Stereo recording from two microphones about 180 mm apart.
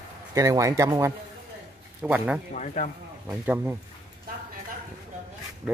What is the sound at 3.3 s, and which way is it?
Speech, 10° right (ahead or behind).